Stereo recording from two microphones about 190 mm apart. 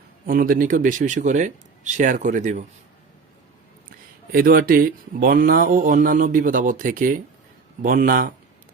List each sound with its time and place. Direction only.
0.3 s speech: 50° right (ahead or behind)
3.8 s speech: 50° right (ahead or behind)